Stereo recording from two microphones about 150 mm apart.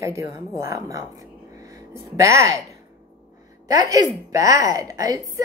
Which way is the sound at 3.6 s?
25° right (ahead or behind).